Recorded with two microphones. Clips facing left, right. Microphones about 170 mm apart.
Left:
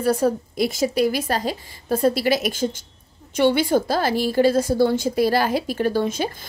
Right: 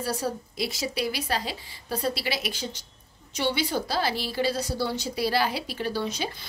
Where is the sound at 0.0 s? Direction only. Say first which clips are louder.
Left 10 dB; 55° left (ahead or behind).